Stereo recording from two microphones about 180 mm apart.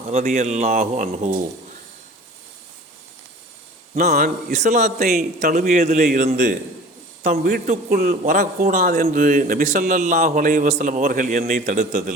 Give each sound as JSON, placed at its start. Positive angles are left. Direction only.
{"t": 0.1, "sound": "a man's voice", "side_deg": -50}
{"t": 3.9, "sound": "a man's voice", "side_deg": -45}
{"t": 4.9, "sound": "a man's voice", "side_deg": -55}
{"t": 5.7, "sound": "a man's voice", "side_deg": -40}
{"t": 7.9, "sound": "a man's voice", "side_deg": -60}
{"t": 8.1, "sound": "a man's voice", "side_deg": -45}